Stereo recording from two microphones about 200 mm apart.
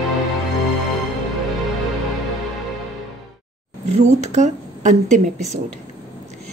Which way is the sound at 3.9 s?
35° right (ahead or behind).